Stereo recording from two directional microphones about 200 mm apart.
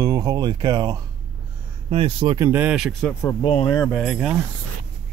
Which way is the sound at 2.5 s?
10° right (ahead or behind).